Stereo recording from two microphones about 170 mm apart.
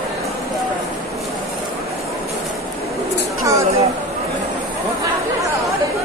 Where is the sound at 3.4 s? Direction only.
20° right (ahead or behind).